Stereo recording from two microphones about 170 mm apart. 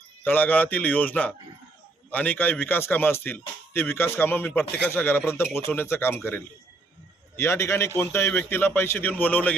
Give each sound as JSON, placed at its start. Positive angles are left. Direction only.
{"t": 0.3, "sound": "speech", "side_deg": 10}